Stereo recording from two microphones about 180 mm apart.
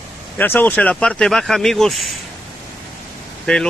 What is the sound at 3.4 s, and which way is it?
Speech, 5° left (ahead or behind).